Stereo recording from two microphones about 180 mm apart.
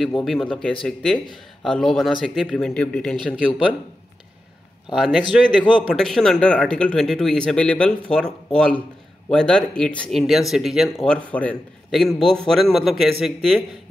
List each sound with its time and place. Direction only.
0.0 s speech: centre (ahead or behind)
3.3 s speech: 5° right (ahead or behind)
4.9 s speech: 5° right (ahead or behind)
5.6 s a man's voice: 25° left (ahead or behind)
5.9 s speech: centre (ahead or behind)